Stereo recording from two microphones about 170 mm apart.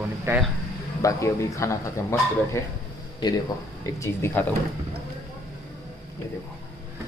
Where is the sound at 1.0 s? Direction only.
20° left (ahead or behind).